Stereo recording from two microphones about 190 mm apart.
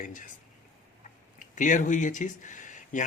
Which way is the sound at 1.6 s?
40° left (ahead or behind).